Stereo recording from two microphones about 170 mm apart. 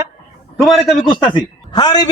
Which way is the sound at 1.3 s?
25° left (ahead or behind).